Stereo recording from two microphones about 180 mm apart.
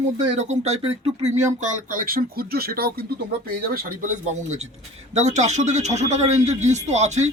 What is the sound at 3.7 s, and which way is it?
A man's voice, 45° right (ahead or behind).